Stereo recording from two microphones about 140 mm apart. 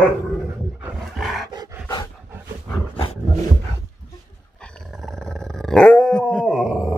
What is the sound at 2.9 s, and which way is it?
Roaring cats, 40° left (ahead or behind).